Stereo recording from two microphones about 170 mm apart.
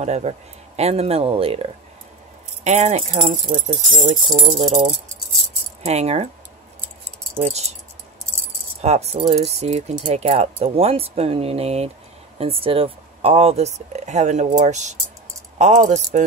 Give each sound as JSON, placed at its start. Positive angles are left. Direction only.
{"t": 0.0, "sound": "speech", "side_deg": -40}
{"t": 7.3, "sound": "speech", "side_deg": -40}
{"t": 8.8, "sound": "speech", "side_deg": -40}